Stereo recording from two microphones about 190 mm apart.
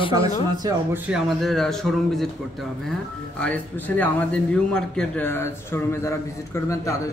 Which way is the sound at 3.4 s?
10° left (ahead or behind).